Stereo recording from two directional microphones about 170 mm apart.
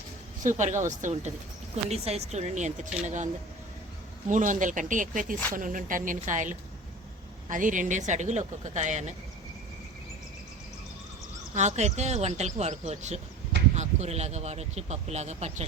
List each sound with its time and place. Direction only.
0.4 s speech: 45° right (ahead or behind)
4.3 s speech: 50° right (ahead or behind)
11.5 s speech: 45° right (ahead or behind)